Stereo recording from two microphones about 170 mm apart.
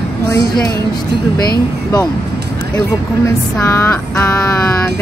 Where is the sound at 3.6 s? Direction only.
15° left (ahead or behind).